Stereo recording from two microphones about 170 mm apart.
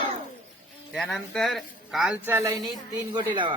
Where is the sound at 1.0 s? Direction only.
5° left (ahead or behind).